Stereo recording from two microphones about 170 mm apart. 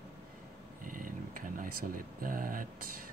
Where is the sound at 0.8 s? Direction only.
55° right (ahead or behind).